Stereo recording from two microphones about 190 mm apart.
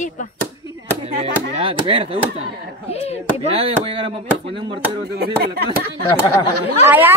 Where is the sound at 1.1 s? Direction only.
35° right (ahead or behind).